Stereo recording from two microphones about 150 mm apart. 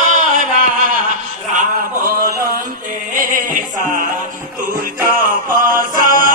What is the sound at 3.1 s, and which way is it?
Music, 65° right (ahead or behind).